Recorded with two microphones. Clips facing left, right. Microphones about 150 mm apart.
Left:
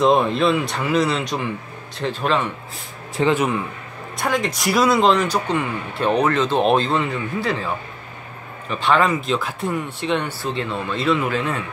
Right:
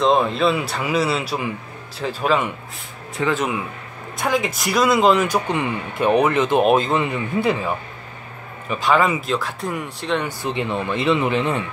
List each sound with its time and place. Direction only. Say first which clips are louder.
0.0 s speech: left 1 dB; centre (ahead or behind)
3.2 s speech: left 3 dB; 30° left (ahead or behind)
4.2 s speech: right 1 dB; centre (ahead or behind)
8.8 s speech: even; 5° right (ahead or behind)
10.2 s speech: right 1 dB; 15° right (ahead or behind)